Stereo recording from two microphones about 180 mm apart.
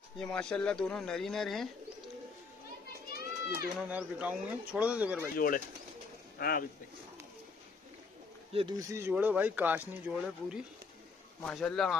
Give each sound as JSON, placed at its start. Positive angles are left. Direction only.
{"t": 0.2, "sound": "speech", "side_deg": 5}
{"t": 3.7, "sound": "speech", "side_deg": -5}
{"t": 5.3, "sound": "speech", "side_deg": 50}
{"t": 8.5, "sound": "speech", "side_deg": -25}